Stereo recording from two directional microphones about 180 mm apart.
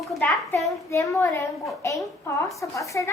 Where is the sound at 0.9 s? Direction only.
15° left (ahead or behind).